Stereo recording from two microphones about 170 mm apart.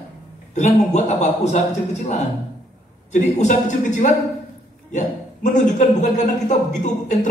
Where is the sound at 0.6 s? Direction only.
40° left (ahead or behind).